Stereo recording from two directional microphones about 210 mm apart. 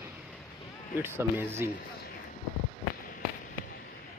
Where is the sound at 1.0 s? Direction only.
10° right (ahead or behind).